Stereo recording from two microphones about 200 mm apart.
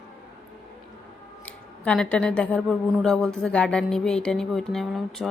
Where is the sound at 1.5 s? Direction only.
5° left (ahead or behind).